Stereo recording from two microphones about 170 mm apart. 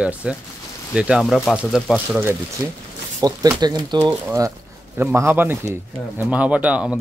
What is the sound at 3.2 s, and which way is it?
Speech, 25° right (ahead or behind).